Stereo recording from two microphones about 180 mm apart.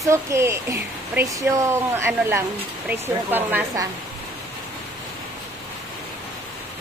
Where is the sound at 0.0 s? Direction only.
15° right (ahead or behind).